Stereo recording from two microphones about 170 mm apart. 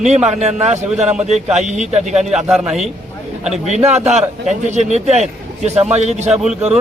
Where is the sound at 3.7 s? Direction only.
40° right (ahead or behind).